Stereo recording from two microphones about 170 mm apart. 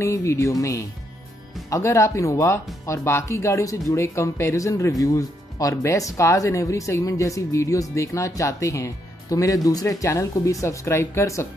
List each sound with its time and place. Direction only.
0.0 s speech: 15° left (ahead or behind)